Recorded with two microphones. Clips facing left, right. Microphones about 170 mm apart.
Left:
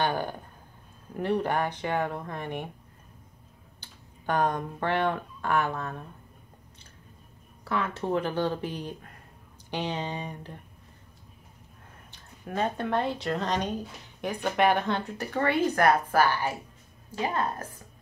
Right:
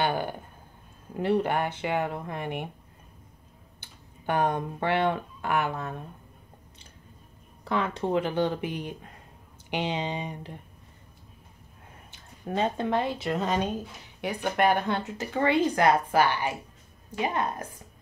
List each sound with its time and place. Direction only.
0.0 s speech: 10° right (ahead or behind)
4.3 s speech: 10° right (ahead or behind)
7.6 s speech: 15° right (ahead or behind)
12.4 s speech: 20° right (ahead or behind); by 15.4 s 5° right (ahead or behind)
15.4 s speech: 15° right (ahead or behind)